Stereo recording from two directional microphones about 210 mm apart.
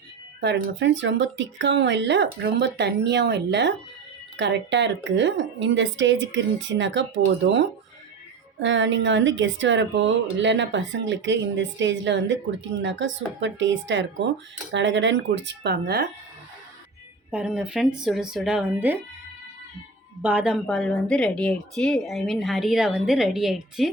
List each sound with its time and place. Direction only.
0.4 s speech: 60° right (ahead or behind)
8.5 s speech: 60° right (ahead or behind)
17.3 s speech: 5° right (ahead or behind)
20.2 s speech: 5° right (ahead or behind)